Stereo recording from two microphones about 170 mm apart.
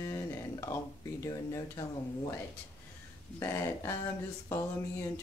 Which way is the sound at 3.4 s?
15° left (ahead or behind).